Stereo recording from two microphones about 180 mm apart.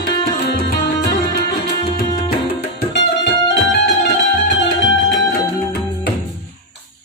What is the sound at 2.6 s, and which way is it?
Music, 60° left (ahead or behind).